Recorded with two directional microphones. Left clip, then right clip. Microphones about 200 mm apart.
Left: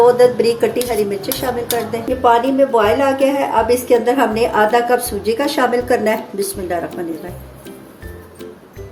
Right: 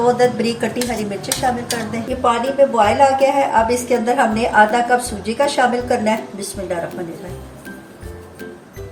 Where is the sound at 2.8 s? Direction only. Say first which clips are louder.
Right 1 dB; 35° left (ahead or behind).